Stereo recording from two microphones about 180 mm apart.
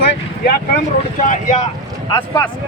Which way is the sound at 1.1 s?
45° left (ahead or behind).